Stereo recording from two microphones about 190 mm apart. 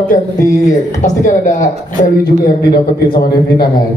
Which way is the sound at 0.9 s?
40° left (ahead or behind).